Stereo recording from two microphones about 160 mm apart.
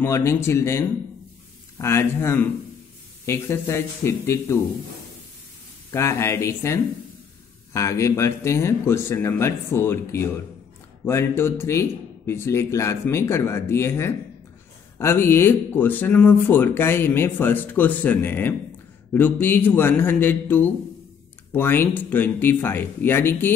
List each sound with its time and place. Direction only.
0.0 s speech: 15° left (ahead or behind)
5.9 s speech: 20° left (ahead or behind)